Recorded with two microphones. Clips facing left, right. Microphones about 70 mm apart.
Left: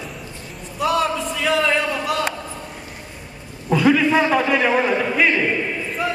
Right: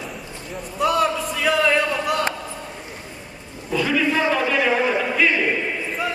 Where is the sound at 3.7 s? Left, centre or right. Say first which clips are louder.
Left 6 dB; centre.